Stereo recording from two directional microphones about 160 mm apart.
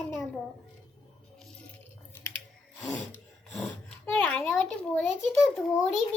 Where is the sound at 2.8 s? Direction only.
10° left (ahead or behind).